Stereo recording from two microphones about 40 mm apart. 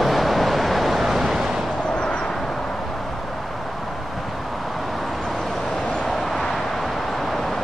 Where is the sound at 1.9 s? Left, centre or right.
Left.